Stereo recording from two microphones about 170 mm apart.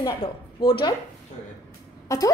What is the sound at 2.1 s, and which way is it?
Speech, 20° left (ahead or behind).